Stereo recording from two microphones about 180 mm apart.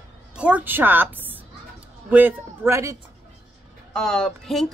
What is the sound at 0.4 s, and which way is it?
Speech, 10° right (ahead or behind).